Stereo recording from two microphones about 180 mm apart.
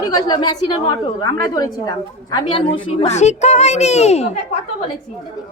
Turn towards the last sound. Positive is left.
turn(degrees=35)  # may be behind; listen again after turning